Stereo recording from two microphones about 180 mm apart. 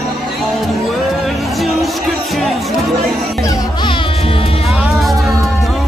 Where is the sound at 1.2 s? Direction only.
Centre (ahead or behind).